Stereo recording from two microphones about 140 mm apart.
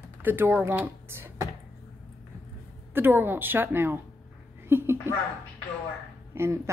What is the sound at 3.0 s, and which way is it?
A woman's voice, 15° right (ahead or behind).